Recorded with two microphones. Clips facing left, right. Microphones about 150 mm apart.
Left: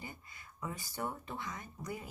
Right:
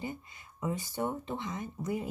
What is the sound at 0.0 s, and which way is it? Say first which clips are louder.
Speech: right 9 dB; 20° right (ahead or behind).